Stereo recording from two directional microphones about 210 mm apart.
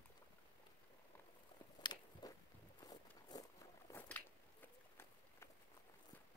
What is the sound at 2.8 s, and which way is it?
Walk, 20° left (ahead or behind).